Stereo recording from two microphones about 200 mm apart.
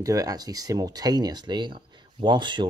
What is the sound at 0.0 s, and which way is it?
Speech, 15° right (ahead or behind).